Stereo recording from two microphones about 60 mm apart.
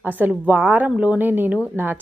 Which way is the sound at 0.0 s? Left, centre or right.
Right.